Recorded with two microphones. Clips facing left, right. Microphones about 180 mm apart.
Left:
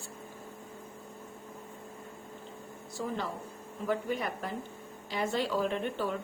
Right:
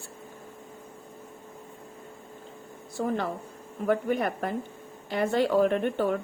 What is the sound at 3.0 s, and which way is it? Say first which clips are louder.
A woman's voice: right 6 dB; 55° right (ahead or behind).